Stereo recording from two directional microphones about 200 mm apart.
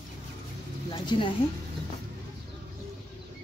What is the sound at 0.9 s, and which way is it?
Speech, 25° left (ahead or behind).